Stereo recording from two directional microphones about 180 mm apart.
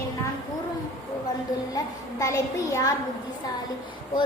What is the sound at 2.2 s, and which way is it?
Speech, 20° left (ahead or behind).